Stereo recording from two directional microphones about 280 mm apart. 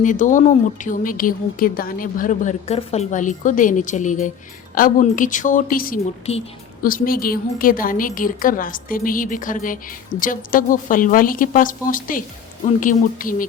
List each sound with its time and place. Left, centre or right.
0.0 s speech: left